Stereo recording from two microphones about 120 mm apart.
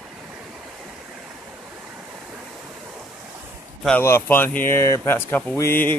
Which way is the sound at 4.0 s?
20° left (ahead or behind).